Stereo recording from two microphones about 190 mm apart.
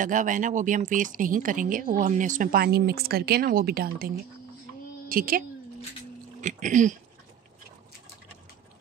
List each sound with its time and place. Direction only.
0.0 s a woman's voice: 40° right (ahead or behind)
6.4 s speech: 40° right (ahead or behind)